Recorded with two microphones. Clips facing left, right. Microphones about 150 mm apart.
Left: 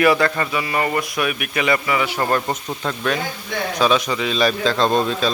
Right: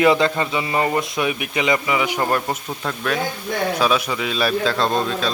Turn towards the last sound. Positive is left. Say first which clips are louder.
# left 2 dB
turn(degrees=0)  # may be behind; listen again after turning